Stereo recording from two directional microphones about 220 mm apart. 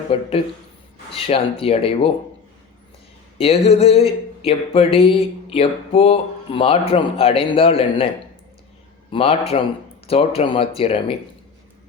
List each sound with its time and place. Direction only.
0.1 s speech: 25° left (ahead or behind)
3.3 s speech: 25° left (ahead or behind)
9.1 s speech: 25° left (ahead or behind)